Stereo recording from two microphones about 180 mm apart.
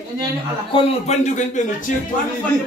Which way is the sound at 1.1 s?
40° left (ahead or behind).